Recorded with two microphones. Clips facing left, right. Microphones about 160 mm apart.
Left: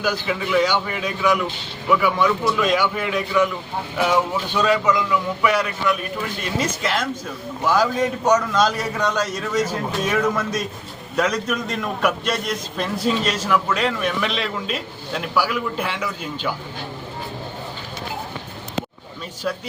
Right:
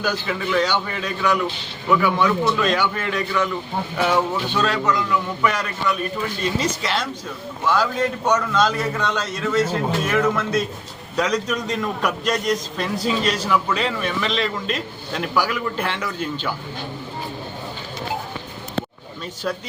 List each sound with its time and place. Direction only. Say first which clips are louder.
0.0 s a man's voice: left 1 dB; 10° left (ahead or behind)